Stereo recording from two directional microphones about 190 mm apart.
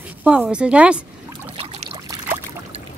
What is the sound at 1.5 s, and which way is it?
Pour, 30° right (ahead or behind).